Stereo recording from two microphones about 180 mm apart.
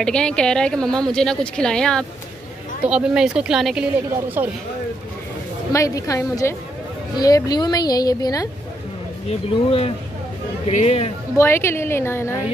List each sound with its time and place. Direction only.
0.0 s a woman's voice: 5° left (ahead or behind)
5.7 s a woman's voice: 20° left (ahead or behind)
9.3 s speech: 35° left (ahead or behind)
11.3 s a woman's voice: 15° left (ahead or behind)